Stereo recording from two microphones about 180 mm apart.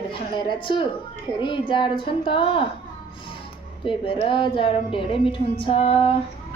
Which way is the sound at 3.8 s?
30° left (ahead or behind).